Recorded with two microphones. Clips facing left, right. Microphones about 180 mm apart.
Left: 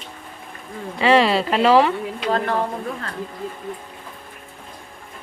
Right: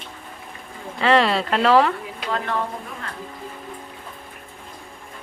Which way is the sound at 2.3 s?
35° left (ahead or behind).